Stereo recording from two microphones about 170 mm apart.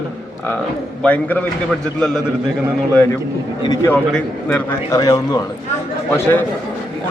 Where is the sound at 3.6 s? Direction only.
25° left (ahead or behind).